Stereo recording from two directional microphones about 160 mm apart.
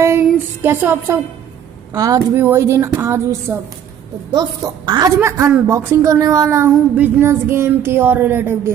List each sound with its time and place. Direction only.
0.6 s a woman's voice: 15° right (ahead or behind)